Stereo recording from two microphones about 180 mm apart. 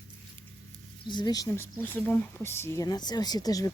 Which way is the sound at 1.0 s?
25° left (ahead or behind).